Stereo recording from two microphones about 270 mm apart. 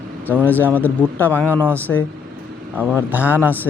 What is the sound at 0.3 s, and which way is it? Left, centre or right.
Speech, centre.